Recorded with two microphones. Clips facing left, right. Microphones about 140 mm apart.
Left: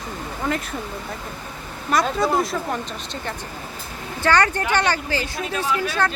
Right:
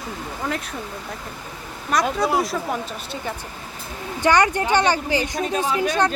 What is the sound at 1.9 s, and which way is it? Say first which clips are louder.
A woman's voice: even; centre (ahead or behind).